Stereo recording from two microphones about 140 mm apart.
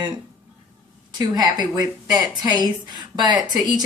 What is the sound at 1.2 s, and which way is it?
A woman's voice, 30° right (ahead or behind).